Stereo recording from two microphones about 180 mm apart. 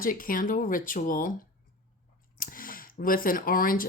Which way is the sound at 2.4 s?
50° left (ahead or behind).